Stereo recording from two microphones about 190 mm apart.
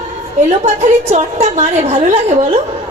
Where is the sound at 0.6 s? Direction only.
35° right (ahead or behind).